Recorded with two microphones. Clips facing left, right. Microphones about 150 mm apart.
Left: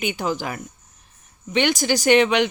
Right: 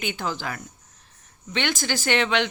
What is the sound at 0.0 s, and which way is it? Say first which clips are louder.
Speech: left 4 dB; 15° left (ahead or behind).